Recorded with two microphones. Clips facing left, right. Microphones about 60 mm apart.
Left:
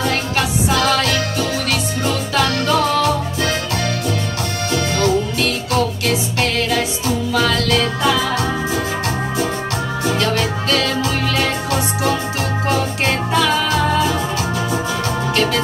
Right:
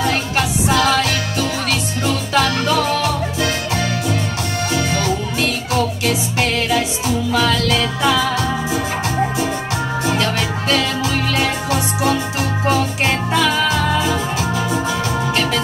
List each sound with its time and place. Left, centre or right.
0.0 s music: centre
10.0 s music: centre